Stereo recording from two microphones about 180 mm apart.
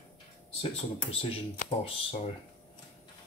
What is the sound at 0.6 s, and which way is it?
Speech, 30° left (ahead or behind).